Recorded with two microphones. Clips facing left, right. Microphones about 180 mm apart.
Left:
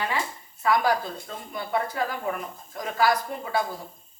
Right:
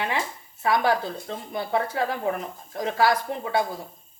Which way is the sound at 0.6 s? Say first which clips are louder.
Right 1 dB; 25° right (ahead or behind).